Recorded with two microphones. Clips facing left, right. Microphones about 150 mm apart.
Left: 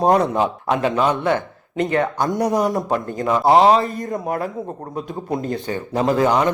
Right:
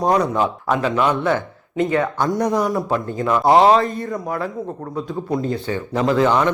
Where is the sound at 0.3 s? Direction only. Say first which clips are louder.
Even; 20° left (ahead or behind).